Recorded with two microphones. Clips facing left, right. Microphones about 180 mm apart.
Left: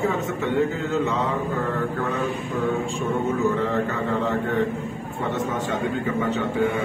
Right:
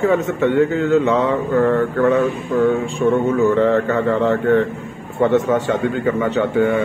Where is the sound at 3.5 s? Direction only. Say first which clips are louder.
Right 8 dB; 75° right (ahead or behind).